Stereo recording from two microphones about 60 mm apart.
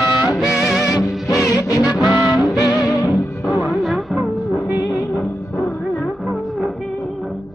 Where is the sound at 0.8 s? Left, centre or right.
Left.